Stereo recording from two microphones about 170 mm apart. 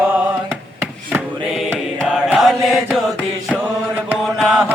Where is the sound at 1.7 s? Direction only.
15° right (ahead or behind).